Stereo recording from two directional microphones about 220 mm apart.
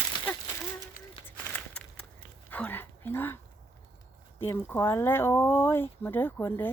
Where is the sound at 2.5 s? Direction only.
10° left (ahead or behind).